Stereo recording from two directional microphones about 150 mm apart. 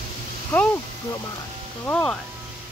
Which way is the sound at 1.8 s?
10° left (ahead or behind).